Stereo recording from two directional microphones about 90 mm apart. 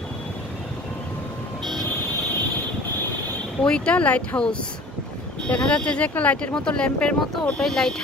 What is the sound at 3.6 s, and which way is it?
Speech, 10° left (ahead or behind).